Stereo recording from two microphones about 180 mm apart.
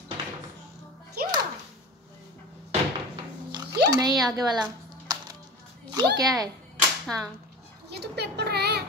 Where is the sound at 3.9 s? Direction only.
20° right (ahead or behind).